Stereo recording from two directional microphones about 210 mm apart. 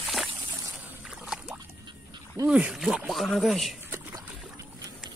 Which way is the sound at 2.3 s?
10° right (ahead or behind).